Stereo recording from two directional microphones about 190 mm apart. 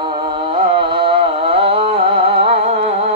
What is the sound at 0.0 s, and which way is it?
Music, 25° right (ahead or behind).